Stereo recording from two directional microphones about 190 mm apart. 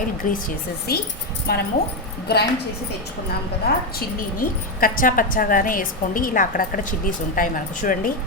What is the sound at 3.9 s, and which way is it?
A woman's voice, 45° left (ahead or behind).